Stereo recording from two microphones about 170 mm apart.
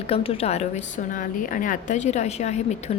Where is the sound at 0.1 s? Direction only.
35° left (ahead or behind).